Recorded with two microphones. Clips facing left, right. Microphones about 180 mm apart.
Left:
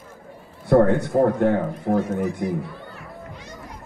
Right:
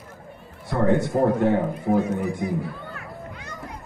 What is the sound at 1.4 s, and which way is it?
Speech, 55° left (ahead or behind).